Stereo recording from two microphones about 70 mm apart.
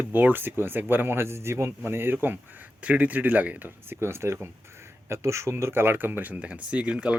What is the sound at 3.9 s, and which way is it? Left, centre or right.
Speech, right.